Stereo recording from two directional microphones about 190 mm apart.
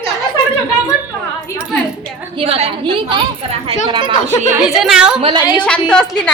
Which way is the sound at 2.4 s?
30° right (ahead or behind).